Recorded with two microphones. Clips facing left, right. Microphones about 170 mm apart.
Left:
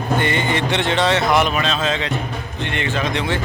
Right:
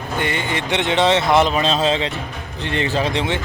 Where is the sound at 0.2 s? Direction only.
5° right (ahead or behind); by 3.4 s 25° right (ahead or behind).